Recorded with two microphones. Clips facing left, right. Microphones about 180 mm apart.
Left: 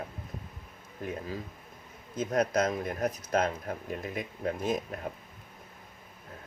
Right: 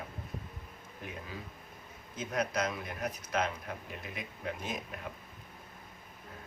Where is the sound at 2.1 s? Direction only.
45° left (ahead or behind).